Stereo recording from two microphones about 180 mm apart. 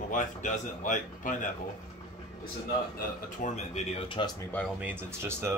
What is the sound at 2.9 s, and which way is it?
Speech, 40° left (ahead or behind).